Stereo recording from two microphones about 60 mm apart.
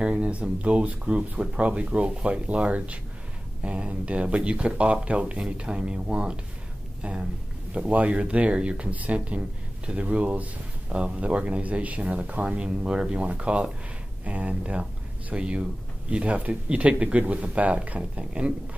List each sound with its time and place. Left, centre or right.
0.0 s speech: right